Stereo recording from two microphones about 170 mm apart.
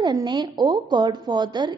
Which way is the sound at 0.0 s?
25° right (ahead or behind).